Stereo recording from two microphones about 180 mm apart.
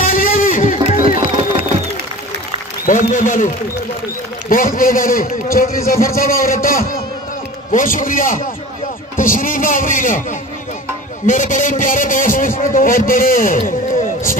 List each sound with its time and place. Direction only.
0.0 s a sound: 50° left (ahead or behind)
2.9 s a man's voice: 45° left (ahead or behind)
11.2 s a man's voice: 45° left (ahead or behind)